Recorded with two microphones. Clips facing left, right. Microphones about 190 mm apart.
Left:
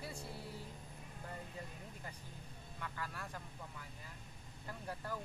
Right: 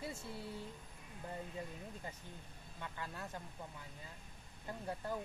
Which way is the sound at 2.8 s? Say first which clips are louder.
Even; 20° right (ahead or behind).